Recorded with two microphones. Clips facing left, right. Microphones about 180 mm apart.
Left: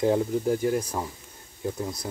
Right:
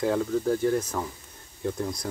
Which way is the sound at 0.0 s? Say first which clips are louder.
Left 2 dB; 20° left (ahead or behind).